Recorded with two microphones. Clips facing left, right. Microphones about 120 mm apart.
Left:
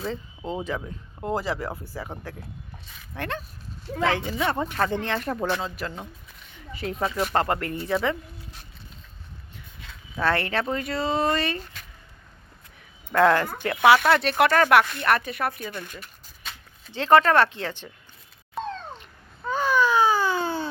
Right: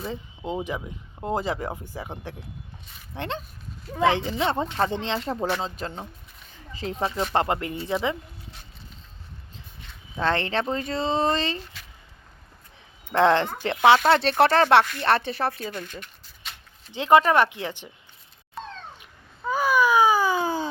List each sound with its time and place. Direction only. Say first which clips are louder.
0.0 s speech: left 1 dB; 15° right (ahead or behind)
10.2 s speech: even; 25° right (ahead or behind)
13.1 s speech: even; 25° right (ahead or behind)
16.9 s speech: even; 15° right (ahead or behind)
18.6 s cat: left 6 dB; centre (ahead or behind)
18.9 s a sound: left 2 dB; 10° right (ahead or behind)